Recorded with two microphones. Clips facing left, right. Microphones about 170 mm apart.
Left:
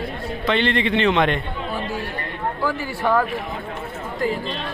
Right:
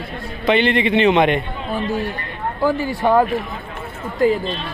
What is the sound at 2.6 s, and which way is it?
Speech, 20° right (ahead or behind).